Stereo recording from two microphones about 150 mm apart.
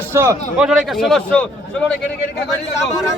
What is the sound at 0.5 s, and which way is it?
Speech, 5° right (ahead or behind).